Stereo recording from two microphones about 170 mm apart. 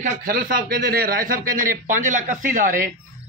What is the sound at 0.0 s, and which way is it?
A man's voice, 55° right (ahead or behind).